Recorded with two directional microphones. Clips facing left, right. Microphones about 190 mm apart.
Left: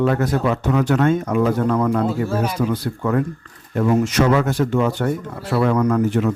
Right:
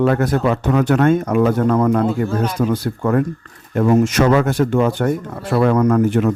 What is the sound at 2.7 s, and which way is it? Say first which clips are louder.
Speech: right 3 dB; 50° right (ahead or behind).